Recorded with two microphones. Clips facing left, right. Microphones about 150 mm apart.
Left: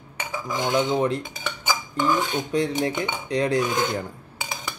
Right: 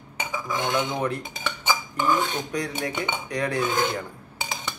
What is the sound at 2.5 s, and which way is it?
Cutlery, 25° left (ahead or behind).